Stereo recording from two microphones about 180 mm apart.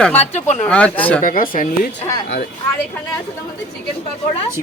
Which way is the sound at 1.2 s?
50° left (ahead or behind).